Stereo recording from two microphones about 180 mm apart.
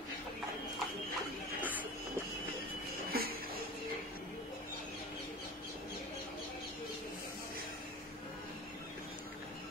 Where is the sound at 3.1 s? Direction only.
55° right (ahead or behind).